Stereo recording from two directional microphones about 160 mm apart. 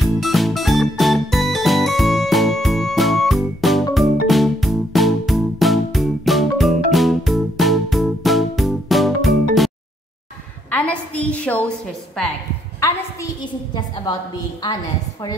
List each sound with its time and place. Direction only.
0.0 s music: centre (ahead or behind)
10.7 s a sound: 10° left (ahead or behind)
12.8 s a woman's voice: 25° left (ahead or behind)